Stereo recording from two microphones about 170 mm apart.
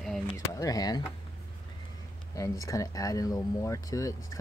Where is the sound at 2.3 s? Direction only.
20° left (ahead or behind).